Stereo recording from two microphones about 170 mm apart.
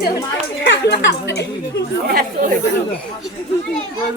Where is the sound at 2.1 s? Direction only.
65° right (ahead or behind).